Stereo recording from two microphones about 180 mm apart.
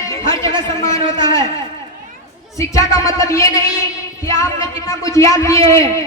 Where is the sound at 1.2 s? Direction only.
20° left (ahead or behind).